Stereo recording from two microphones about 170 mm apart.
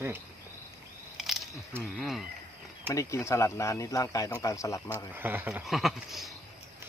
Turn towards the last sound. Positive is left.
turn(degrees=0)  # may be behind; listen again after turning